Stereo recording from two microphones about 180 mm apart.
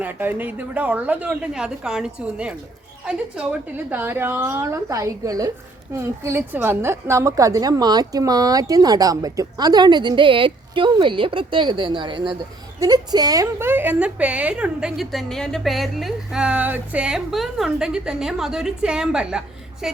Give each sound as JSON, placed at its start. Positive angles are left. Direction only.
{"t": 0.0, "sound": "a woman's voice", "side_deg": -10}